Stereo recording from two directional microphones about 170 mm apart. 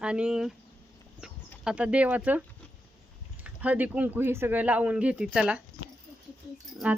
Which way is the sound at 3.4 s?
10° right (ahead or behind).